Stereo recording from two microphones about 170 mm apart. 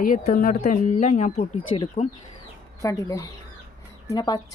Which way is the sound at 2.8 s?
20° left (ahead or behind).